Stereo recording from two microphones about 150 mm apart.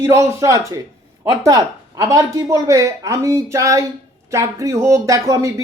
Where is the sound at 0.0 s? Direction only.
20° right (ahead or behind).